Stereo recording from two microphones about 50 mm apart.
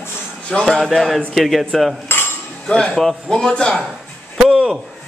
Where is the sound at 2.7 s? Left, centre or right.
Centre.